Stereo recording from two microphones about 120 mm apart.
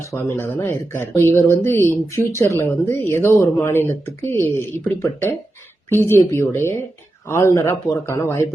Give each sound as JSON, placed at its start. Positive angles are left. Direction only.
{"t": 0.0, "sound": "speech", "side_deg": 25}
{"t": 5.9, "sound": "speech", "side_deg": 20}